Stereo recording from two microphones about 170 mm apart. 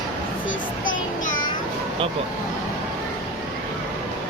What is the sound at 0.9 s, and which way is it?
Child singing, 50° left (ahead or behind).